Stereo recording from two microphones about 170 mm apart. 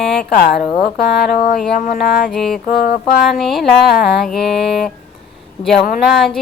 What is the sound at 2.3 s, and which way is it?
Mantra, centre (ahead or behind).